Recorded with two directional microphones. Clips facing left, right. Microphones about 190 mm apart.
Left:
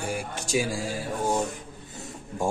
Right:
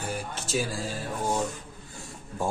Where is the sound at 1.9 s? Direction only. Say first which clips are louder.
Left 4 dB; 20° left (ahead or behind).